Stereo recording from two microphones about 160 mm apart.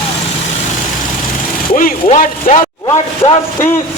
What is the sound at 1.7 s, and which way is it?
Speech, 55° left (ahead or behind).